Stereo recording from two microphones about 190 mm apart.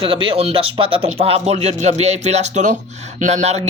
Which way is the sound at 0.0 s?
25° right (ahead or behind).